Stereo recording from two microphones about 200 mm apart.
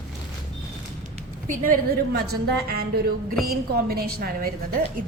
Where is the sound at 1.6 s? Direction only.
45° right (ahead or behind).